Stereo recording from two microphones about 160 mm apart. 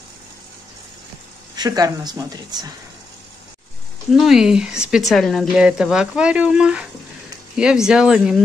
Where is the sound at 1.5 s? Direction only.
25° right (ahead or behind).